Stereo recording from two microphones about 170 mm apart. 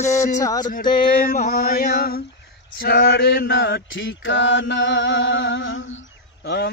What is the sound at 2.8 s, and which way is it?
Mantra, 65° left (ahead or behind).